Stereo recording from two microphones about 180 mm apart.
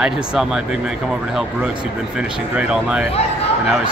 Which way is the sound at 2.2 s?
5° right (ahead or behind).